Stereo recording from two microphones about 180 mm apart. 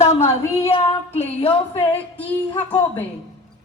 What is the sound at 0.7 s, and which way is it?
Child singing, 35° left (ahead or behind).